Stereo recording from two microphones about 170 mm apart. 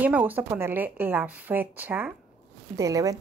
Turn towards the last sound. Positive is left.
turn(degrees=-20)  # may be behind; listen again after turning